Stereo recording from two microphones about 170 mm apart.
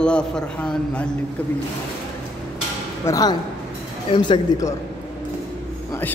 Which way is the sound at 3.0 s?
20° left (ahead or behind).